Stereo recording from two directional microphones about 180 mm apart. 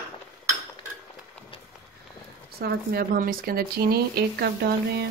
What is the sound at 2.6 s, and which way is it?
Speech, 60° right (ahead or behind).